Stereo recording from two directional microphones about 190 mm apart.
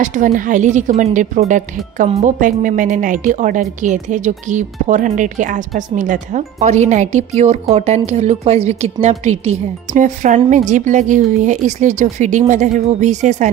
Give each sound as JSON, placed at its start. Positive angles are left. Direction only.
{"t": 0.0, "sound": "a woman's voice", "side_deg": -40}